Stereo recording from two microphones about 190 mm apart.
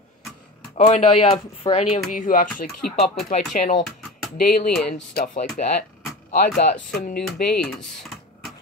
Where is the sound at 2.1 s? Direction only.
45° left (ahead or behind).